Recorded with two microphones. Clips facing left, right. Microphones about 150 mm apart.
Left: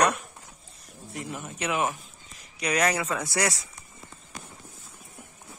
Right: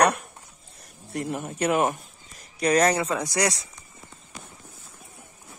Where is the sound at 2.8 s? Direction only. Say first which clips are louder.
Right 4 dB; 30° right (ahead or behind).